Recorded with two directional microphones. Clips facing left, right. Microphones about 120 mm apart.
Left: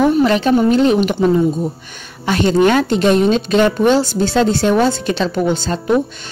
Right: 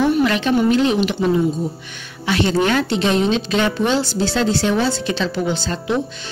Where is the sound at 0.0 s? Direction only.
35° left (ahead or behind).